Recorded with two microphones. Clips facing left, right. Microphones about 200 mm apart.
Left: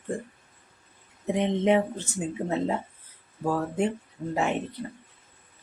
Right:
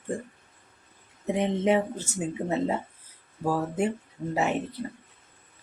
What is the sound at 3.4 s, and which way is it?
Speech, 5° right (ahead or behind).